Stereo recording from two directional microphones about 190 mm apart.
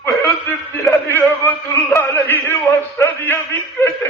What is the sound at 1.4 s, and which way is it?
Mantra, 10° left (ahead or behind).